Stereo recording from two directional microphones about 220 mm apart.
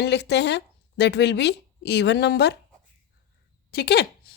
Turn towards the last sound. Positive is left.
turn(degrees=45)  # may be behind; listen again after turning